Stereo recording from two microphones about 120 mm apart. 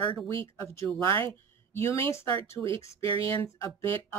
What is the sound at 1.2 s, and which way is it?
Speech, 20° left (ahead or behind).